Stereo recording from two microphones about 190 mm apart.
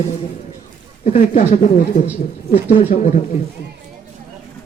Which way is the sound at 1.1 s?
35° left (ahead or behind).